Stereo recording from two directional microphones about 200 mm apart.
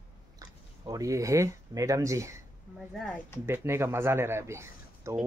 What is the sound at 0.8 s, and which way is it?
Speech, 15° right (ahead or behind).